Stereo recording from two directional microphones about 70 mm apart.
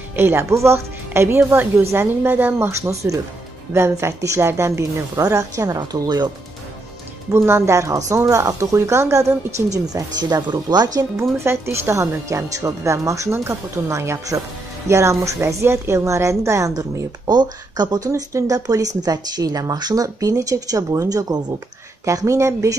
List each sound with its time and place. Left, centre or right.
0.1 s a woman's voice: right
2.7 s a woman's voice: right
5.2 s speech: right
5.8 s speech: right
7.3 s speech: right
10.3 s speech: right
11.0 s speech: right
17.3 s speech: right